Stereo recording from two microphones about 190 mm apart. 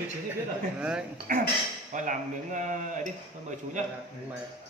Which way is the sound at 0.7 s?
5° right (ahead or behind).